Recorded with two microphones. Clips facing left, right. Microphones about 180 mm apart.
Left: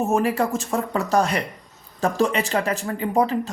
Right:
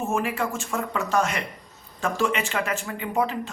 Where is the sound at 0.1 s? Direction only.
40° left (ahead or behind).